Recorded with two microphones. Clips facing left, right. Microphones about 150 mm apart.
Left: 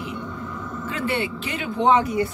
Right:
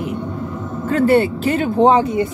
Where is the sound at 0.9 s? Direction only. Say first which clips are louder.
Right 12 dB; 40° right (ahead or behind); by 2.3 s 25° right (ahead or behind).